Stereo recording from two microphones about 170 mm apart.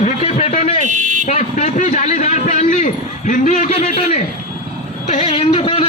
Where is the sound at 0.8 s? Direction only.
50° right (ahead or behind).